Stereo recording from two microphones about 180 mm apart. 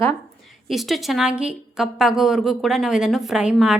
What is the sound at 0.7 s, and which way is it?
A woman's voice, centre (ahead or behind).